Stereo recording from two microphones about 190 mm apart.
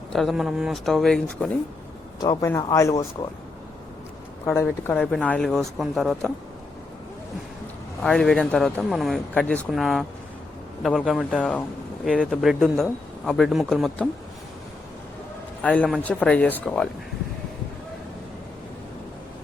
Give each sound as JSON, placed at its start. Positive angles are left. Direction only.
{"t": 0.1, "sound": "speech", "side_deg": 0}
{"t": 2.2, "sound": "speech", "side_deg": 15}
{"t": 4.5, "sound": "speech", "side_deg": 10}
{"t": 8.0, "sound": "speech", "side_deg": 5}
{"t": 15.6, "sound": "speech", "side_deg": 5}